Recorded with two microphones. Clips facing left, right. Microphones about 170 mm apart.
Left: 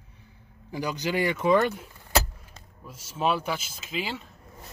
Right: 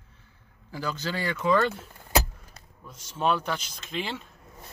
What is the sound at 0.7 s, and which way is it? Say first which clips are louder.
Speech: left 3 dB; 15° left (ahead or behind).